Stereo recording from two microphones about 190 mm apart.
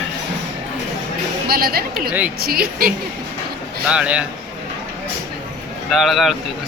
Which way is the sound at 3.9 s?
5° right (ahead or behind).